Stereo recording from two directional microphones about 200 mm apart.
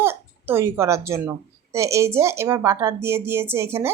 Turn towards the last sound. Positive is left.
turn(degrees=-10)  # may be behind; listen again after turning